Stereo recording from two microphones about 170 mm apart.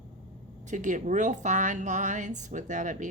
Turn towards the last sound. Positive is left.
turn(degrees=-45)  # may be behind; listen again after turning